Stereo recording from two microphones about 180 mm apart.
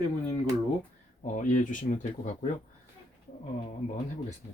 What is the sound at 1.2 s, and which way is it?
Speech, 45° left (ahead or behind).